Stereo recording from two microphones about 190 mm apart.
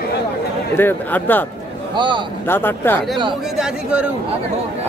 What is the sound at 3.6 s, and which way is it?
Speech, 5° right (ahead or behind).